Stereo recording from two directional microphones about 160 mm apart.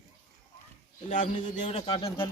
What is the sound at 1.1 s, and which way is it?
Speech, 50° left (ahead or behind).